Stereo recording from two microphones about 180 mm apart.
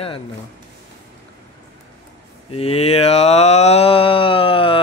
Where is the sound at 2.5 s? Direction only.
35° left (ahead or behind).